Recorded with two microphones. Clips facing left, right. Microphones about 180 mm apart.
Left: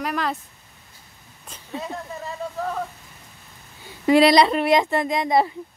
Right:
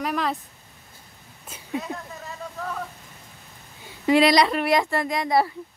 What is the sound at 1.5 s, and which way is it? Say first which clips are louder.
Speech: right 1 dB; 5° right (ahead or behind).